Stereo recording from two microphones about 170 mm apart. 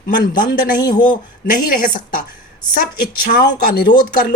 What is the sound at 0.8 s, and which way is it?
Speech, 25° left (ahead or behind).